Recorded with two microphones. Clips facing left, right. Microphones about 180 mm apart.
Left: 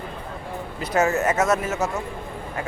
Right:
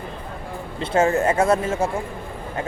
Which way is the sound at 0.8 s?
30° right (ahead or behind).